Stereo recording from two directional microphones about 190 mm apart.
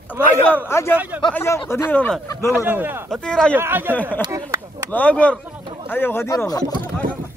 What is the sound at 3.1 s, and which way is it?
Speech, 5° left (ahead or behind).